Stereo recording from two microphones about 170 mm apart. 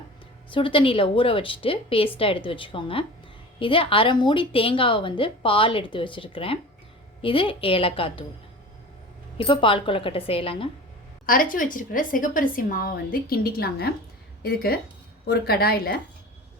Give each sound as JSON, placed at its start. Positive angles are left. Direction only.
{"t": 0.5, "sound": "a woman's voice", "side_deg": 30}
{"t": 9.5, "sound": "a woman's voice", "side_deg": 30}
{"t": 11.3, "sound": "a woman's voice", "side_deg": 55}